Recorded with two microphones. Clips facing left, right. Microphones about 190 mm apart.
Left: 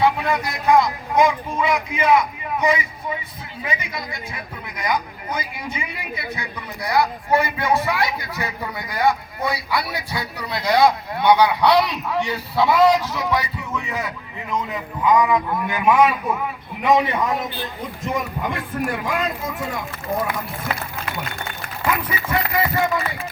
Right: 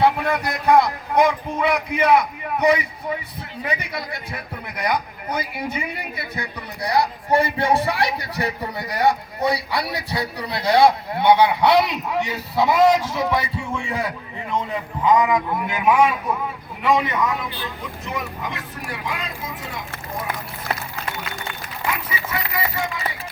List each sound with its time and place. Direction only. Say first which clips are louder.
0.0 s speech: even; 55° right (ahead or behind)
6.8 s a man's voice: even; 35° right (ahead or behind); by 15.8 s 15° right (ahead or behind)
16.8 s a man's voice: left 2 dB; 20° left (ahead or behind)
17.2 s speech: left 1 dB; 35° left (ahead or behind)
18.1 s speech: left 4 dB; 50° left (ahead or behind)
21.8 s speech: left 4 dB; 50° left (ahead or behind)